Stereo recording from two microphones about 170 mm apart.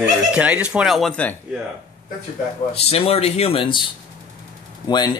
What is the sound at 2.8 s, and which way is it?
Speech, 35° left (ahead or behind).